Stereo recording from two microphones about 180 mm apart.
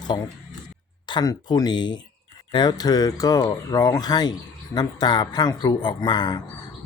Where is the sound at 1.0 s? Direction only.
20° left (ahead or behind).